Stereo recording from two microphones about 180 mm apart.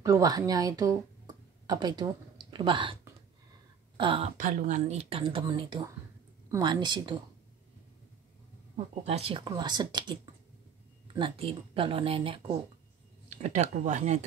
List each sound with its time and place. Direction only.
0.0 s a woman's voice: 20° right (ahead or behind)
1.2 s a sound: 20° right (ahead or behind)
3.9 s speech: 30° right (ahead or behind)
4.4 s a woman's voice: 45° right (ahead or behind); by 7.2 s 25° right (ahead or behind)
8.7 s a woman's voice: 35° right (ahead or behind)
11.1 s speech: 30° right (ahead or behind)